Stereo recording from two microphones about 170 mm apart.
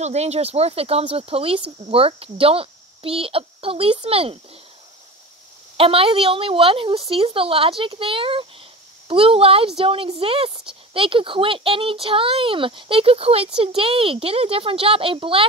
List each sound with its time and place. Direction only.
0.0 s a child's voice: 40° right (ahead or behind)
5.8 s a child's voice: 35° right (ahead or behind)